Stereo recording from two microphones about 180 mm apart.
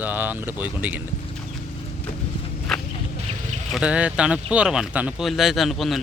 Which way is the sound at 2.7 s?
Centre (ahead or behind).